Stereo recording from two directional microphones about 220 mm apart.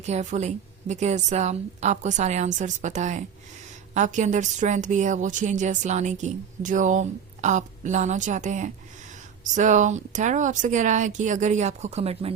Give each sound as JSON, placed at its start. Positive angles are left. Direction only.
{"t": 0.0, "sound": "a woman's voice", "side_deg": -30}